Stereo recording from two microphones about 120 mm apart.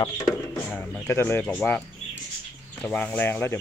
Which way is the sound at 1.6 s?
15° left (ahead or behind).